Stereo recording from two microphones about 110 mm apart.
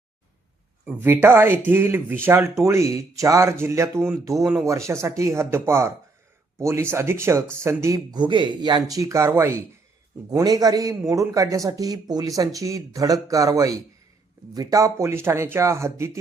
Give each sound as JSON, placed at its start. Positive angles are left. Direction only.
{"t": 0.9, "sound": "speech", "side_deg": -20}
{"t": 8.2, "sound": "a man's voice", "side_deg": -45}
{"t": 10.2, "sound": "a man's voice", "side_deg": -35}